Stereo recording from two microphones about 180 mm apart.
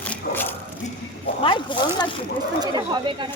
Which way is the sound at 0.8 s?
40° left (ahead or behind).